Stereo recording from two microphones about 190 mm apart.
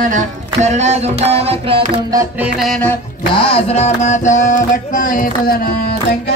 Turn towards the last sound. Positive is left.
turn(degrees=45)  # may be behind; listen again after turning